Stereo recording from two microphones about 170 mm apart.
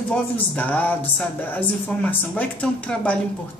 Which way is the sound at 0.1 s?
10° left (ahead or behind).